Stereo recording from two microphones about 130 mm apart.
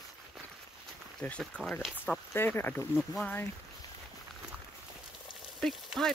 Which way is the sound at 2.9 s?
Centre (ahead or behind).